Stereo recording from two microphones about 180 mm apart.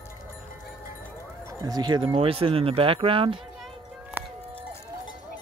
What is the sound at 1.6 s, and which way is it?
Speech, 20° right (ahead or behind).